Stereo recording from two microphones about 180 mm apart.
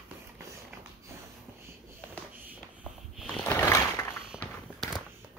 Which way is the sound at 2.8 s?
Centre (ahead or behind).